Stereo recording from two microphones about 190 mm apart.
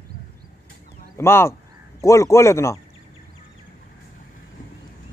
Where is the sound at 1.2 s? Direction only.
15° left (ahead or behind).